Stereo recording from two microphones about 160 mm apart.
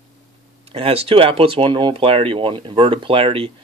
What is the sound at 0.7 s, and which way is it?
Speech, 35° right (ahead or behind).